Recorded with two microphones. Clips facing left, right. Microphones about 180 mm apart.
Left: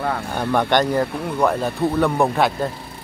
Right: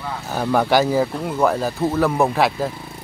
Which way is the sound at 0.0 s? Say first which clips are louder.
Left 6 dB; 60° left (ahead or behind).